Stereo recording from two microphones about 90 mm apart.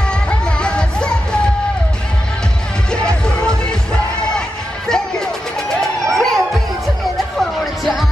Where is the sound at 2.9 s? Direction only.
10° left (ahead or behind).